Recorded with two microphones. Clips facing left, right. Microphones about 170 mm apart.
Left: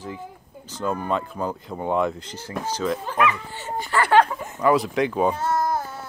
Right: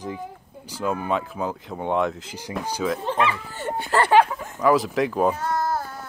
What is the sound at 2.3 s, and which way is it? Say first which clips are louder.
Speech: even; 15° right (ahead or behind).